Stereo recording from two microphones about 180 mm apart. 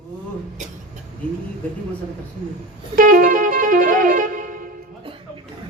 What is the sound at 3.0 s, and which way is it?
Music, 50° right (ahead or behind).